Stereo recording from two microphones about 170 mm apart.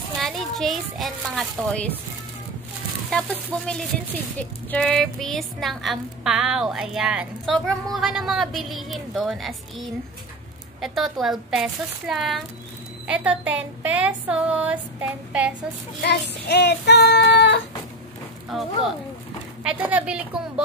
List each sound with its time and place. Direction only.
0.2 s a child's voice: centre (ahead or behind)
3.1 s a woman's voice: 5° left (ahead or behind)
16.0 s child singing: 80° left
18.5 s a woman's voice: centre (ahead or behind)